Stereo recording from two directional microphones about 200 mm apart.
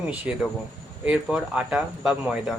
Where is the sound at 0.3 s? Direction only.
5° right (ahead or behind).